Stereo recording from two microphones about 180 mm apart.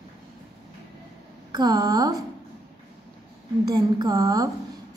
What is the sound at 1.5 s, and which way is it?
Speech, 20° right (ahead or behind).